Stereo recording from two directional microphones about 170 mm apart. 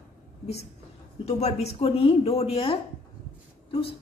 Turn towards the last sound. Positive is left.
turn(degrees=35)  # may be behind; listen again after turning